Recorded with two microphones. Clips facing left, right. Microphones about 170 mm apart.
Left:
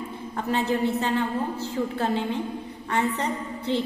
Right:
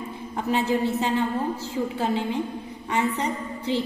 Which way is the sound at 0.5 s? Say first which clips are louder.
Right 1 dB; 15° right (ahead or behind).